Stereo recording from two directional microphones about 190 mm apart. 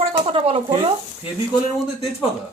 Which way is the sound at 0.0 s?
30° right (ahead or behind).